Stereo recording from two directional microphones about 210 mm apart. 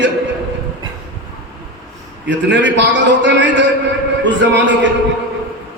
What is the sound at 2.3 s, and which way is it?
A man's voice, 60° right (ahead or behind).